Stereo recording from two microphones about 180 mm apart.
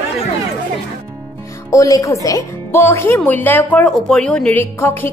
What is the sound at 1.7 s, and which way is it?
Speech, 20° left (ahead or behind).